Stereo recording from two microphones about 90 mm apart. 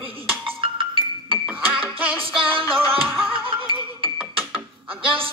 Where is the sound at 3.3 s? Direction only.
75° right (ahead or behind).